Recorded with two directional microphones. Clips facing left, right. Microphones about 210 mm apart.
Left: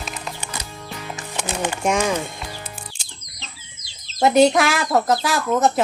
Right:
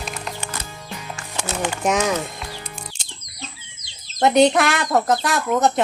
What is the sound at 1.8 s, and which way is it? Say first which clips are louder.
Music: even; centre (ahead or behind).